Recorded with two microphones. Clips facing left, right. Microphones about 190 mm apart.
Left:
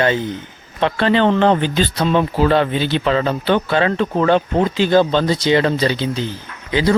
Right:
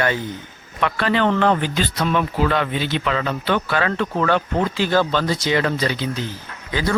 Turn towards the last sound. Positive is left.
turn(degrees=20)  # may be behind; listen again after turning